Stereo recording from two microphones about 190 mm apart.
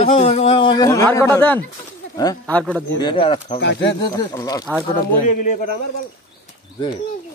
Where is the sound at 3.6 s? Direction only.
70° left (ahead or behind).